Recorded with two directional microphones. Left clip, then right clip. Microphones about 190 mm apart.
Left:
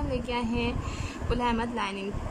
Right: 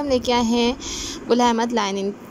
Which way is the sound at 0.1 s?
30° right (ahead or behind).